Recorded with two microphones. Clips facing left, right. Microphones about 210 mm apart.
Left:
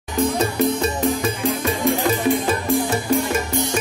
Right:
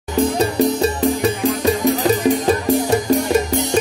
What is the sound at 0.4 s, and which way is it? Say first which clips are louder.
Music: right 3 dB; 35° right (ahead or behind).